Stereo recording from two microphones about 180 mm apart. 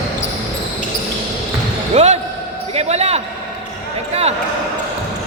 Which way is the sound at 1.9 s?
40° right (ahead or behind).